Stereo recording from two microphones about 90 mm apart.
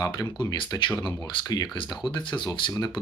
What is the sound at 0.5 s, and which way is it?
Speech, 60° left (ahead or behind).